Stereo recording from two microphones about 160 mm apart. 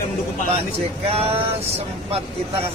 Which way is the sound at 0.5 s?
40° right (ahead or behind).